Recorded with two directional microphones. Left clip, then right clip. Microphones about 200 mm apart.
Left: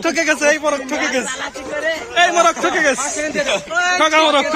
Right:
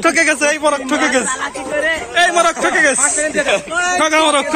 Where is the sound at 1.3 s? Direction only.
55° left (ahead or behind).